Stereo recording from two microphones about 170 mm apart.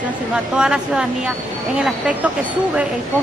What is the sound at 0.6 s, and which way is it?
Speech, 5° right (ahead or behind).